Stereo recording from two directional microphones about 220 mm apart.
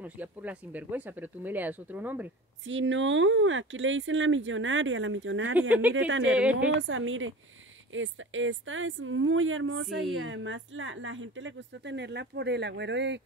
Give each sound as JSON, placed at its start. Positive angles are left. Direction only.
{"t": 0.0, "sound": "speech", "side_deg": -5}
{"t": 2.6, "sound": "speech", "side_deg": -60}
{"t": 5.6, "sound": "speech", "side_deg": -5}
{"t": 6.0, "sound": "speech", "side_deg": -60}
{"t": 6.3, "sound": "a woman's voice", "side_deg": -5}
{"t": 6.8, "sound": "speech", "side_deg": -60}